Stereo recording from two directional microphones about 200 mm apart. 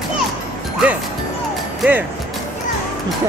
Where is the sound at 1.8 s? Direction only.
10° right (ahead or behind).